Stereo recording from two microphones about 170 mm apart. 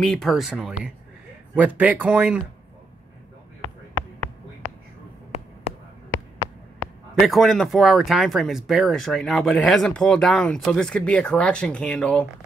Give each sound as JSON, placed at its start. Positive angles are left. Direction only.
{"t": 0.0, "sound": "speech", "side_deg": 5}
{"t": 5.3, "sound": "a sound", "side_deg": 40}
{"t": 7.2, "sound": "speech", "side_deg": 0}